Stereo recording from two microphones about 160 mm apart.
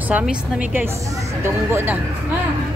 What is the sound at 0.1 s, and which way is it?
Speech, 10° right (ahead or behind).